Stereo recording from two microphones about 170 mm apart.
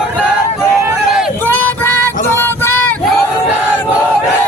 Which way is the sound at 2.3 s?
15° left (ahead or behind).